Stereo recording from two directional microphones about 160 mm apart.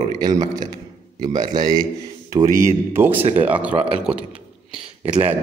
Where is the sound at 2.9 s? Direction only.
15° right (ahead or behind).